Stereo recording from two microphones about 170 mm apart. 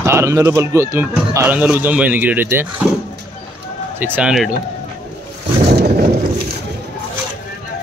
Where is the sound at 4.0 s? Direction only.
10° right (ahead or behind).